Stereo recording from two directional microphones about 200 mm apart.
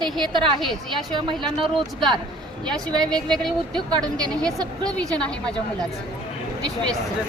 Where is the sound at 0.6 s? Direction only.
Centre (ahead or behind).